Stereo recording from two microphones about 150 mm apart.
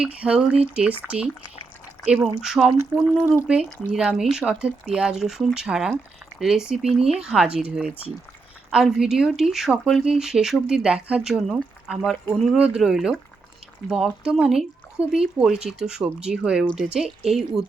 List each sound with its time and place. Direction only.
0.0 s speech: 5° right (ahead or behind)